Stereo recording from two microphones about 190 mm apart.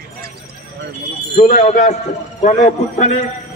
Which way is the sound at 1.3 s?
35° left (ahead or behind).